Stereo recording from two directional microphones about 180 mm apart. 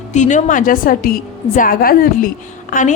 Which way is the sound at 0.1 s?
45° left (ahead or behind).